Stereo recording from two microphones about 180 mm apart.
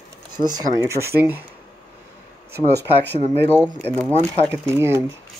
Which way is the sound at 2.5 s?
65° right (ahead or behind).